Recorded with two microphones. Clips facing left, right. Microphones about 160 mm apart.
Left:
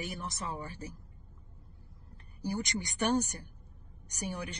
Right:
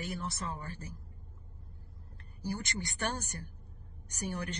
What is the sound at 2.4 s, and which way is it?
Speech, 15° left (ahead or behind).